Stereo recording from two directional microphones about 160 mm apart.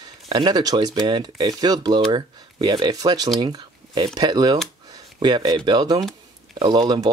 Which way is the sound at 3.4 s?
25° right (ahead or behind).